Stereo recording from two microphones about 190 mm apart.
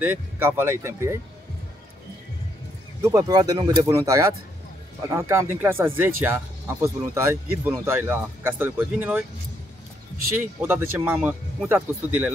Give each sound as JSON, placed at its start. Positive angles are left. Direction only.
{"t": 0.0, "sound": "speech", "side_deg": -10}
{"t": 3.0, "sound": "speech", "side_deg": -15}
{"t": 10.6, "sound": "speech", "side_deg": -10}